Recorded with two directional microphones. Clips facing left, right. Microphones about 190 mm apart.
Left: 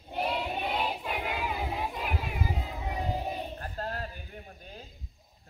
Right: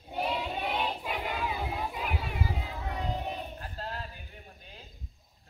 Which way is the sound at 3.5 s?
50° left (ahead or behind).